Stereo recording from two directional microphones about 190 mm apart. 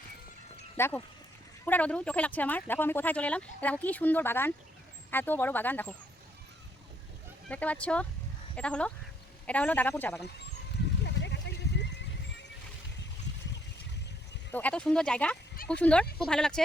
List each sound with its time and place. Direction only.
0.8 s speech: 10° left (ahead or behind)
7.4 s speech: 5° left (ahead or behind)
11.0 s a sound: 65° left (ahead or behind)
14.5 s speech: 5° left (ahead or behind)